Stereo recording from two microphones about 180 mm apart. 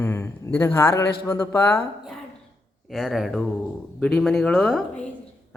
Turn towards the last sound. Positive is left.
turn(degrees=5)  # may be behind; listen again after turning